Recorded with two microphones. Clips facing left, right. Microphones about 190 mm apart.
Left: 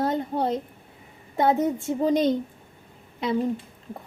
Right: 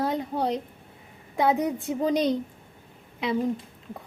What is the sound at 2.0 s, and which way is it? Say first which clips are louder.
Speech: left 2 dB; centre (ahead or behind).